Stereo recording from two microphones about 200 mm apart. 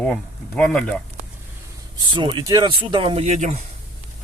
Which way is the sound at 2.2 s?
25° right (ahead or behind).